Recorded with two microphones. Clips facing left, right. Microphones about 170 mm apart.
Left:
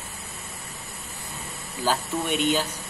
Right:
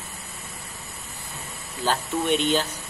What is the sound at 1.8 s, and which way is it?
Speech, 10° left (ahead or behind).